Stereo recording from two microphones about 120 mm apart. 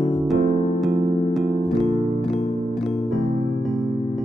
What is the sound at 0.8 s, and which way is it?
Music, 50° right (ahead or behind).